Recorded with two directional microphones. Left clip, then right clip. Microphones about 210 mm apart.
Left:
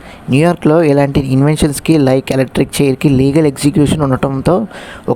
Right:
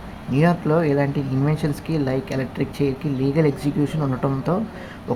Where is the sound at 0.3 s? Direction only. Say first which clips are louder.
Left 9 dB; 50° left (ahead or behind).